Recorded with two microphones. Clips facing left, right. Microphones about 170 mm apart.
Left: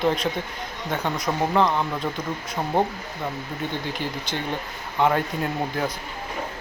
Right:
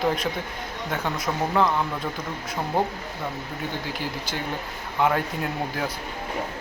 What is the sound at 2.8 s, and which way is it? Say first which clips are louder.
Speech: left 2 dB; 25° left (ahead or behind).